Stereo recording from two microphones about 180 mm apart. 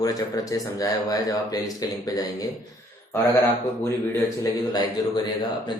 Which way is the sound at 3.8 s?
20° left (ahead or behind).